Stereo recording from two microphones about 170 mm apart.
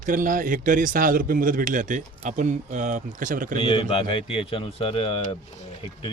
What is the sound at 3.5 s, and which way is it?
Speech, 30° left (ahead or behind).